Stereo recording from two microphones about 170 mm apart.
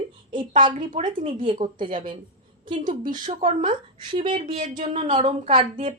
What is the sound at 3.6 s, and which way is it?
Speech, 30° right (ahead or behind).